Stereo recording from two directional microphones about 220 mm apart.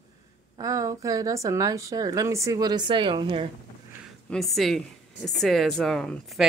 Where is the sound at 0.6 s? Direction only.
15° right (ahead or behind).